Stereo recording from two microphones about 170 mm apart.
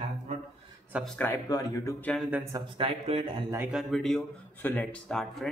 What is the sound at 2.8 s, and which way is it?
Speech, 35° right (ahead or behind).